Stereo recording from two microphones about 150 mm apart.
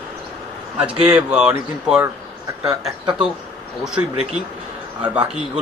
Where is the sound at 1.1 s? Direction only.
5° right (ahead or behind).